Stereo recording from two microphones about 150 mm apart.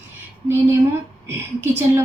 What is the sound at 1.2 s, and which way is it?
Speech, 15° right (ahead or behind).